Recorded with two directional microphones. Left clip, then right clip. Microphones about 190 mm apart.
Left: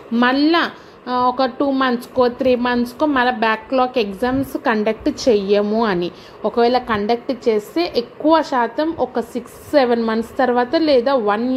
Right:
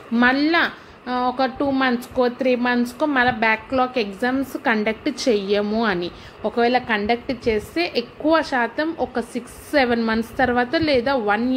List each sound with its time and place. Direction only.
0.1 s speech: 5° left (ahead or behind)